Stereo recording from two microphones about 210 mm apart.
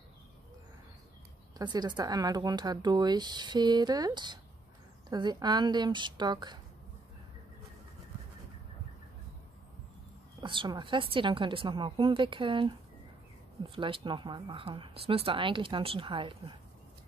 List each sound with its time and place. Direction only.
1.6 s speech: 20° right (ahead or behind)
10.4 s speech: 25° right (ahead or behind)